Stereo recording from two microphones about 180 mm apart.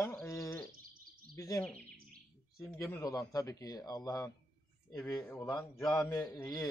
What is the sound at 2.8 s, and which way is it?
A man's voice, 20° left (ahead or behind).